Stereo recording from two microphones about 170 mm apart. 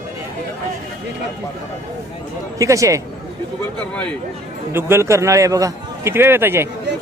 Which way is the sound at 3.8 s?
10° left (ahead or behind).